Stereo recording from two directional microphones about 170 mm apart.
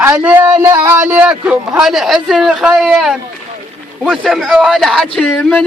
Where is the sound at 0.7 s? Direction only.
10° right (ahead or behind).